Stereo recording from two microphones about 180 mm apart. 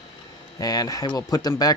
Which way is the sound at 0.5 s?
20° left (ahead or behind).